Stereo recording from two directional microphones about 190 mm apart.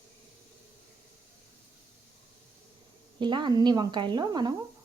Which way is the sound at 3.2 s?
25° right (ahead or behind).